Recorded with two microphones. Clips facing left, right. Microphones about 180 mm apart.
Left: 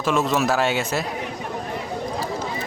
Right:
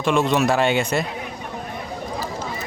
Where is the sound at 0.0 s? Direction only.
5° left (ahead or behind).